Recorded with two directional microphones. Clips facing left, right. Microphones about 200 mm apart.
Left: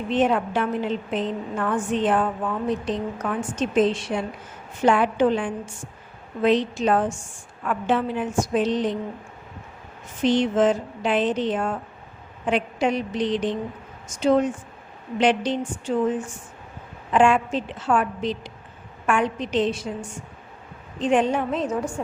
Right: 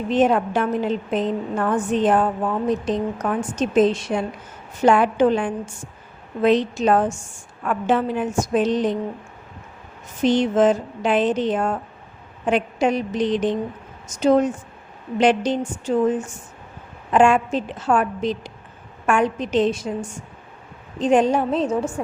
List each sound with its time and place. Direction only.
0.1 s a woman's voice: 40° right (ahead or behind)
10.2 s a woman's voice: 45° right (ahead or behind); by 21.8 s 30° right (ahead or behind)